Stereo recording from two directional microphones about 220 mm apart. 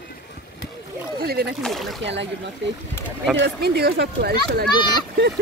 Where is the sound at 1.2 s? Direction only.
45° right (ahead or behind).